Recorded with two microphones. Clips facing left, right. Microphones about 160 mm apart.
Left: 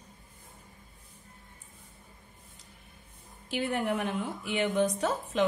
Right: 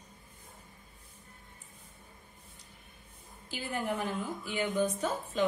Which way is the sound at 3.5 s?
65° left (ahead or behind).